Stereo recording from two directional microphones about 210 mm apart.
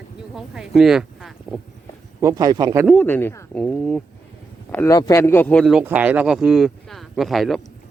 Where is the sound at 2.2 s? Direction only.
15° right (ahead or behind).